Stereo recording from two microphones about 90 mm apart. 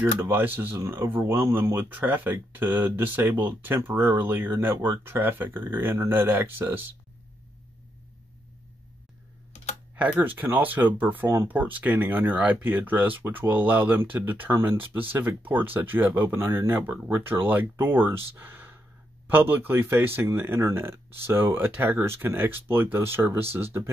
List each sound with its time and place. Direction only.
0.0 s speech: 25° right (ahead or behind)
9.9 s speech: 15° right (ahead or behind)